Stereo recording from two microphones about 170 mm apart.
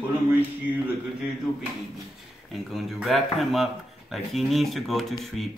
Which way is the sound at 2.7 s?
Centre (ahead or behind).